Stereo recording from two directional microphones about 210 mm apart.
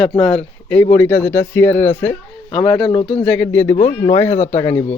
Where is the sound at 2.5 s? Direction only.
25° left (ahead or behind).